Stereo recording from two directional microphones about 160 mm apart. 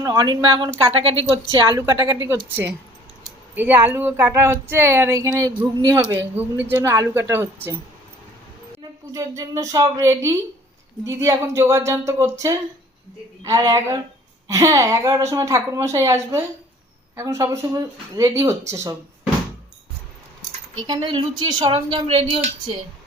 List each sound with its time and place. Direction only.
0.0 s a woman's voice: 25° right (ahead or behind)
8.8 s a woman's voice: 20° right (ahead or behind)
20.8 s speech: 30° right (ahead or behind)